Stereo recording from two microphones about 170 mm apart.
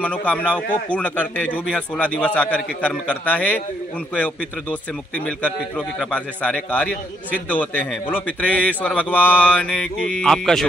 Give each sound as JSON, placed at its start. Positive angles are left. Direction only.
{"t": 0.0, "sound": "a man's voice", "side_deg": 5}